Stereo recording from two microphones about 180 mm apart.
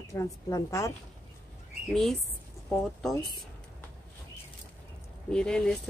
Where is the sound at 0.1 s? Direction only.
15° left (ahead or behind).